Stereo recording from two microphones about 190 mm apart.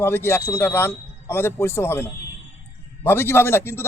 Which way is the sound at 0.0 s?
10° left (ahead or behind).